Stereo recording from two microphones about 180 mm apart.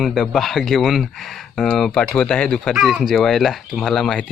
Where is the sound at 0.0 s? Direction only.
Centre (ahead or behind).